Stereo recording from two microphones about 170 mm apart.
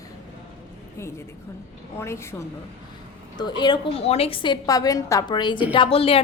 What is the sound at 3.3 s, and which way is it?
A woman's voice, 25° left (ahead or behind).